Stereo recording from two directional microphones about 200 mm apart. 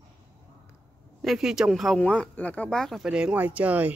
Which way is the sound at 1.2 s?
Centre (ahead or behind).